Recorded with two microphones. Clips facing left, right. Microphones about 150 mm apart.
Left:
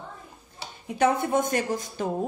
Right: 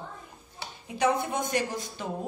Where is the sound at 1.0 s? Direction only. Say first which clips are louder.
Left 4 dB; 50° left (ahead or behind).